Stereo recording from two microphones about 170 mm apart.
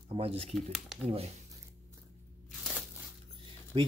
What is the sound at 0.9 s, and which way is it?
Speech, centre (ahead or behind).